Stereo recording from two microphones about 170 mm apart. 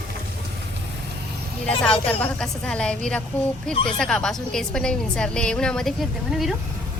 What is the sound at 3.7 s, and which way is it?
Speech, 30° left (ahead or behind).